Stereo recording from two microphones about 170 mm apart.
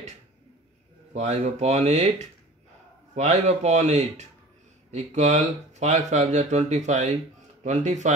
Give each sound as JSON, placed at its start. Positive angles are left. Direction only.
{"t": 1.1, "sound": "speech", "side_deg": -40}